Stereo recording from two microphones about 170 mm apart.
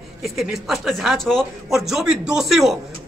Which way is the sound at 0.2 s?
Centre (ahead or behind).